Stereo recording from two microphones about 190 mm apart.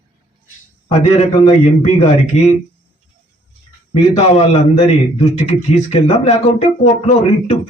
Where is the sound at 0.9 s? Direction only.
35° left (ahead or behind).